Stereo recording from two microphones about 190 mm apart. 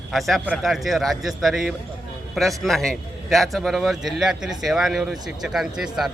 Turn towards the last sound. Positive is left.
turn(degrees=-5)  # may be behind; listen again after turning